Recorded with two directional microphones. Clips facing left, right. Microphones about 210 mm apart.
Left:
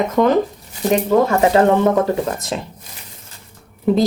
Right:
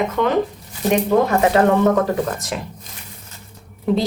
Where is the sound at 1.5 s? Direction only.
30° left (ahead or behind).